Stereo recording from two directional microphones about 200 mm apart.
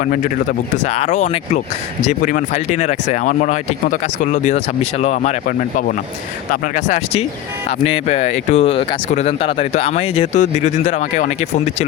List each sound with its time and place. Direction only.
0.0 s speech: 40° left (ahead or behind)